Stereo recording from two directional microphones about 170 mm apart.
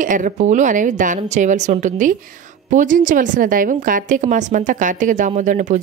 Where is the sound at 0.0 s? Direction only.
50° right (ahead or behind).